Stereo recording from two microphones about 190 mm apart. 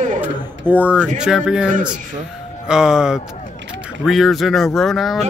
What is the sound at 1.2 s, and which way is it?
Speech, 5° right (ahead or behind).